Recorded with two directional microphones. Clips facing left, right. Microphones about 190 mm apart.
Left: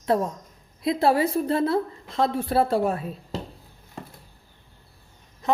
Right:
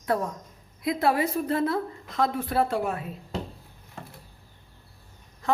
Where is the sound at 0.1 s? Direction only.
25° left (ahead or behind).